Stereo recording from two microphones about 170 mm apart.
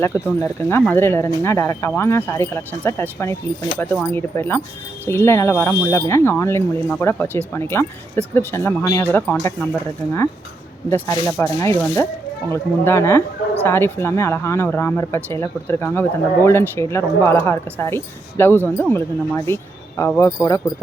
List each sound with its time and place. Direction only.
0.0 s speech: 15° left (ahead or behind)
11.0 s speech: 15° left (ahead or behind)